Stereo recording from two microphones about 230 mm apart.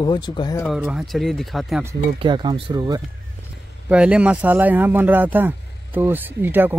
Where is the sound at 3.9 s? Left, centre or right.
Centre.